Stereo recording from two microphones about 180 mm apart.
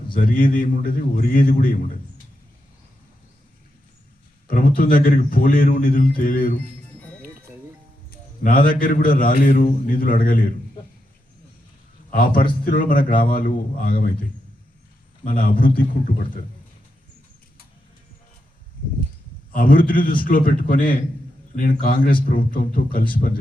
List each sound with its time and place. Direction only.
0.2 s a man's voice: 50° left (ahead or behind)
4.4 s a man's voice: 55° left (ahead or behind)
8.4 s a man's voice: 50° left (ahead or behind)
12.1 s a man's voice: 50° left (ahead or behind)
15.2 s a man's voice: 50° left (ahead or behind)
19.5 s a man's voice: 50° left (ahead or behind)